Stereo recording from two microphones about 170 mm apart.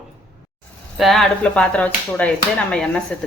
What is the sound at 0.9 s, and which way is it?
Speech, centre (ahead or behind).